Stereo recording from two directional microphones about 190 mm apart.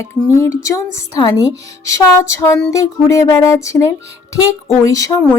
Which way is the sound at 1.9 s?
15° left (ahead or behind).